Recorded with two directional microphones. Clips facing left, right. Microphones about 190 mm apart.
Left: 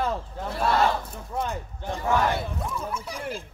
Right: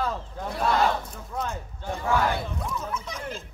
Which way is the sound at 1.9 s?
15° left (ahead or behind).